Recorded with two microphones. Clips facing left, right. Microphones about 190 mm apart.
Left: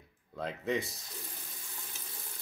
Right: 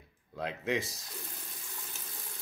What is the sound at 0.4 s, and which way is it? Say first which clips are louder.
Speech: even; centre (ahead or behind).